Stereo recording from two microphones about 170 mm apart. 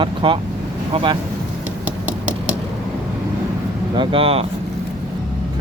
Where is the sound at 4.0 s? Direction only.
30° right (ahead or behind).